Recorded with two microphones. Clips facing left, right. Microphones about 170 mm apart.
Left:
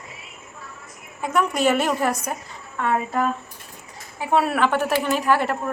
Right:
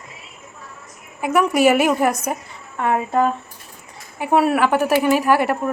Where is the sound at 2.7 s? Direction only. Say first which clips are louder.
Right 4 dB; 25° right (ahead or behind).